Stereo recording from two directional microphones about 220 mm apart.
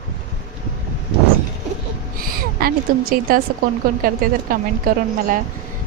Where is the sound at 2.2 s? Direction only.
40° right (ahead or behind).